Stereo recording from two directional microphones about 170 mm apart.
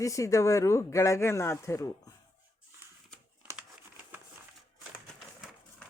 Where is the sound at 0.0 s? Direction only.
20° left (ahead or behind).